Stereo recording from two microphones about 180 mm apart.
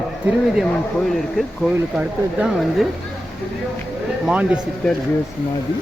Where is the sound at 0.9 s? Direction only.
Centre (ahead or behind).